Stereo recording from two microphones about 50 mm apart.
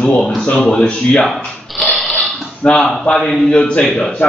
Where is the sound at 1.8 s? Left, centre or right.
Centre.